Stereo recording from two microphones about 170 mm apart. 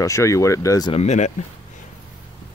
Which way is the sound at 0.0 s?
15° left (ahead or behind).